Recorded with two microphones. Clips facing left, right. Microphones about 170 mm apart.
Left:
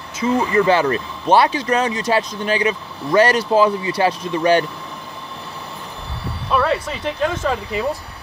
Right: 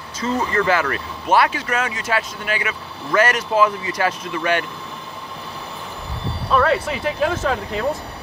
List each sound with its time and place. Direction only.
0.2 s speech: 10° left (ahead or behind)
0.7 s speech: 25° left (ahead or behind)
6.5 s speech: centre (ahead or behind)